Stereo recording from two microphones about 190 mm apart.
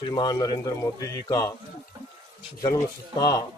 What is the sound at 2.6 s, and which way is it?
Speech, 20° left (ahead or behind).